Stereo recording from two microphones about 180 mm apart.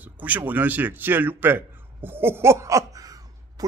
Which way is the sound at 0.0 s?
10° right (ahead or behind).